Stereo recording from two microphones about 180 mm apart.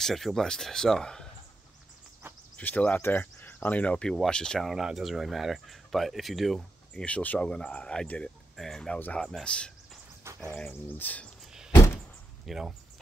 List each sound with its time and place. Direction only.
0.0 s speech: centre (ahead or behind)
2.5 s speech: 10° left (ahead or behind)
10.3 s a sound: 15° right (ahead or behind)
10.7 s speech: 10° left (ahead or behind)
11.7 s a sound: 15° left (ahead or behind)
12.4 s speech: centre (ahead or behind)